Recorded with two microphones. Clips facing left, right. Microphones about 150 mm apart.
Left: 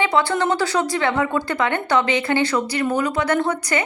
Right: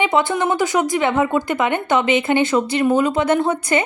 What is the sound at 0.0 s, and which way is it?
Speech, 20° right (ahead or behind).